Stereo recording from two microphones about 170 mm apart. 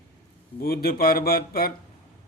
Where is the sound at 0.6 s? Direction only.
65° left (ahead or behind).